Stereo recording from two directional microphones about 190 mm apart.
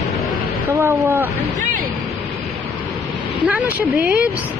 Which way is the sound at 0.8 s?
15° right (ahead or behind).